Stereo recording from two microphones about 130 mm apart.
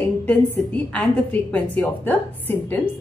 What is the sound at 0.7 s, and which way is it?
A woman's voice, 10° left (ahead or behind).